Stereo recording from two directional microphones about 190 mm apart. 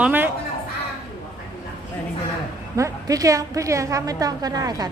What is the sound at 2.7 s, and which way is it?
A woman's voice, 15° right (ahead or behind).